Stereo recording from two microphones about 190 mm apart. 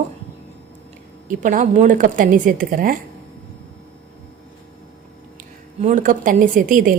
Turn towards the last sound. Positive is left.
turn(degrees=-45)  # may be behind; listen again after turning